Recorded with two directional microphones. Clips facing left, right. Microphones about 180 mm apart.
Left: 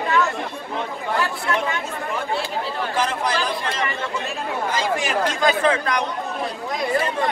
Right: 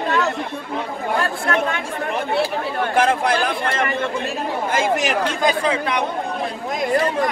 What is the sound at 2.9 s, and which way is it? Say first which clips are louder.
Speech: right 6 dB; 55° right (ahead or behind).